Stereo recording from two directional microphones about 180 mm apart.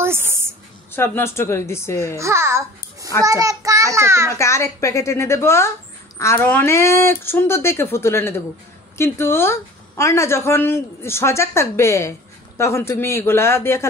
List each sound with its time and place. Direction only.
0.0 s a sound: 15° right (ahead or behind)
0.9 s a woman's voice: 15° left (ahead or behind)
2.1 s a child's voice: 15° right (ahead or behind)
4.4 s a woman's voice: 15° left (ahead or behind)